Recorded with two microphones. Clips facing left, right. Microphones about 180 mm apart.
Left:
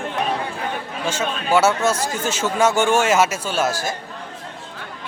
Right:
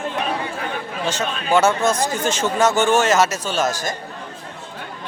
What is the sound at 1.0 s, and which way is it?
Speech, 10° left (ahead or behind).